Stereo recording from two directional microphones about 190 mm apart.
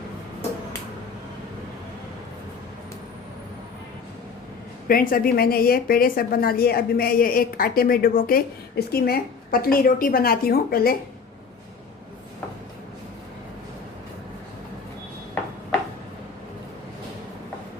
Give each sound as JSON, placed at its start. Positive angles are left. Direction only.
{"t": 4.9, "sound": "a woman's voice", "side_deg": 50}